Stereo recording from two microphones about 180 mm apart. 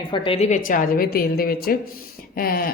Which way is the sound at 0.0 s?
30° left (ahead or behind).